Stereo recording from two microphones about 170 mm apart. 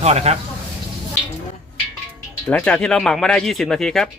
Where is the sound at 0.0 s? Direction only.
40° right (ahead or behind).